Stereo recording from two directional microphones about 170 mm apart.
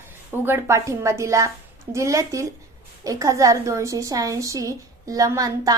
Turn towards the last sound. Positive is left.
turn(degrees=-20)  # may be behind; listen again after turning